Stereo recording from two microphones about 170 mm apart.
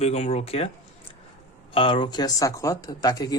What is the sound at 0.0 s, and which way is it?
Speech, 40° left (ahead or behind).